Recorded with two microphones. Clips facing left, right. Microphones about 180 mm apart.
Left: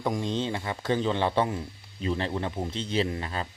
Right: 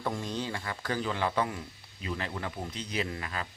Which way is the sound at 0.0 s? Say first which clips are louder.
Left 5 dB; 20° left (ahead or behind).